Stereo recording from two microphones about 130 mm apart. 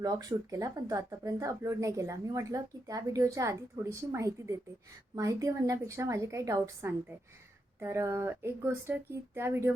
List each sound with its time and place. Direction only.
0.0 s speech: 30° right (ahead or behind)